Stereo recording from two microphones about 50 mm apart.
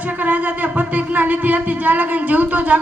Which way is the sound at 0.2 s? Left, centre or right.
Right.